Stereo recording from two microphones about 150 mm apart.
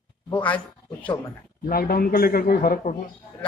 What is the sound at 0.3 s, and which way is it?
Speech, 10° left (ahead or behind).